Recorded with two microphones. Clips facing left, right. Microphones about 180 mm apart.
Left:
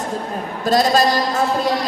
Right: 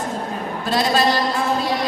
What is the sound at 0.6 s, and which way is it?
Speech, 40° left (ahead or behind).